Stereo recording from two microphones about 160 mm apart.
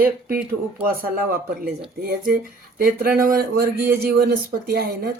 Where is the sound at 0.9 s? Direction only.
65° right (ahead or behind).